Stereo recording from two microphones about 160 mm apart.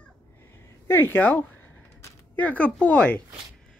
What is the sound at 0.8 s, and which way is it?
Speech, 15° left (ahead or behind).